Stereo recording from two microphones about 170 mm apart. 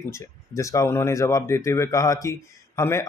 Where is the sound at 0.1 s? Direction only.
15° left (ahead or behind).